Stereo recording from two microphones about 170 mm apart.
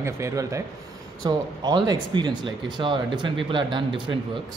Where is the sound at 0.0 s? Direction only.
20° right (ahead or behind).